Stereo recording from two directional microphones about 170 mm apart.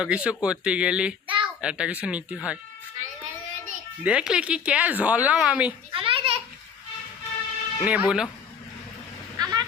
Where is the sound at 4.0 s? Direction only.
5° right (ahead or behind).